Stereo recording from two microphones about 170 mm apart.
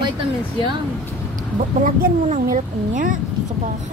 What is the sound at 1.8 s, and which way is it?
Speech, 50° right (ahead or behind).